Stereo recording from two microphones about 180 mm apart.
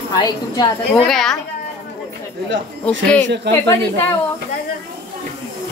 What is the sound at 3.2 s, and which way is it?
Speech, 75° right (ahead or behind).